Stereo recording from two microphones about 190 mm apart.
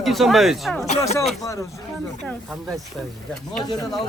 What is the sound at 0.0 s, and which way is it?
Speech, centre (ahead or behind).